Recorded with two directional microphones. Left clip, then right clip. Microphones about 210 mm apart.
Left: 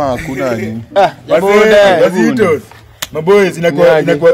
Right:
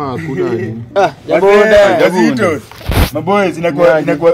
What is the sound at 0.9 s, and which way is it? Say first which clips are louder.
Speech: left 2 dB; 10° right (ahead or behind).